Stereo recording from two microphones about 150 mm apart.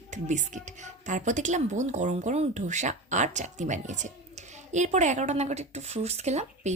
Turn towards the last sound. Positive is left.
turn(degrees=-45)  # may be behind; listen again after turning